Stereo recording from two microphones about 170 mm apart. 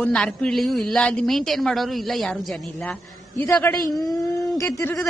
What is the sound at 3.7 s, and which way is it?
A man's voice, 15° left (ahead or behind).